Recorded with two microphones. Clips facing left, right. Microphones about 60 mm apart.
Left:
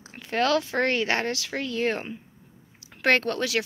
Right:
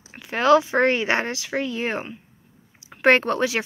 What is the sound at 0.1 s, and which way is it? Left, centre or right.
Speech, centre.